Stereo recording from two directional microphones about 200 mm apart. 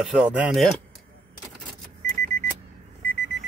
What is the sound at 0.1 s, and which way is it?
Speech, 5° right (ahead or behind).